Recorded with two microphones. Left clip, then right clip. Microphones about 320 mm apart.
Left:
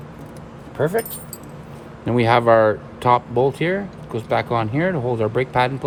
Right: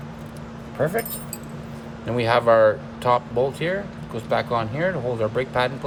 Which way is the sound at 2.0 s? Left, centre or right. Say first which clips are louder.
Left 3 dB; centre.